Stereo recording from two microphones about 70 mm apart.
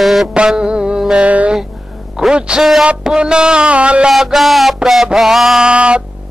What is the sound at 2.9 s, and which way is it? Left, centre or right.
Music, centre.